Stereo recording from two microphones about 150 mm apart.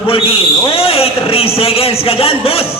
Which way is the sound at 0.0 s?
35° left (ahead or behind).